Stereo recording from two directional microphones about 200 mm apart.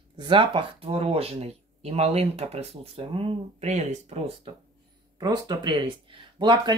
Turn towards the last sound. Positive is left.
turn(degrees=-25)  # may be behind; listen again after turning